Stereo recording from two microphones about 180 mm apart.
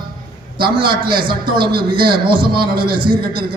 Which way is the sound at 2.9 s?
25° right (ahead or behind).